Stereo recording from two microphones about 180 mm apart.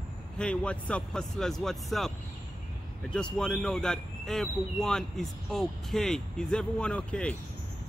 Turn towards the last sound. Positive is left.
turn(degrees=5)  # may be behind; listen again after turning